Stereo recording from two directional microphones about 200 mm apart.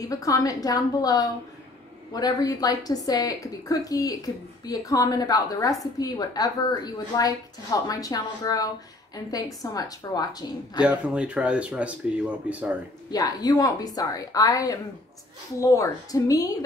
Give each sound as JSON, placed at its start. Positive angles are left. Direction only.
{"t": 0.0, "sound": "a woman's voice", "side_deg": 15}
{"t": 10.8, "sound": "speech", "side_deg": -5}
{"t": 13.1, "sound": "a woman's voice", "side_deg": 20}